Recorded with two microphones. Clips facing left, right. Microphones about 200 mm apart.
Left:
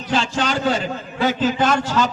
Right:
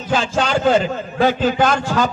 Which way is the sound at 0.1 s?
45° right (ahead or behind).